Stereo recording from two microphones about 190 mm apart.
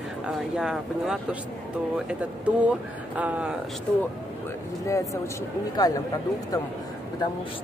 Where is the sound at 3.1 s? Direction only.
5° right (ahead or behind).